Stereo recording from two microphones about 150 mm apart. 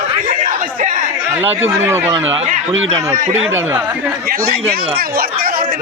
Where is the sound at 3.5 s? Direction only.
15° right (ahead or behind).